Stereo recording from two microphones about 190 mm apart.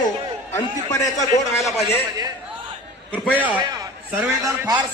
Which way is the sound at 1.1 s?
40° left (ahead or behind).